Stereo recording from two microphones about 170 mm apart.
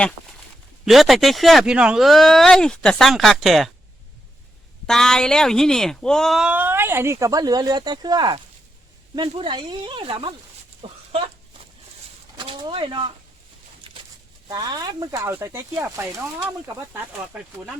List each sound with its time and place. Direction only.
0.9 s speech: centre (ahead or behind)
4.9 s speech: 5° left (ahead or behind); by 10.3 s 30° right (ahead or behind)
10.8 s a sound: 30° right (ahead or behind)
12.4 s speech: 30° right (ahead or behind)
13.9 s a sound: 30° right (ahead or behind)
14.4 s speech: 25° right (ahead or behind); by 17.7 s 5° right (ahead or behind)